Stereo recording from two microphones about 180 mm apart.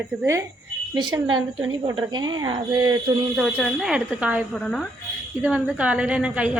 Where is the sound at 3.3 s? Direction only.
Centre (ahead or behind).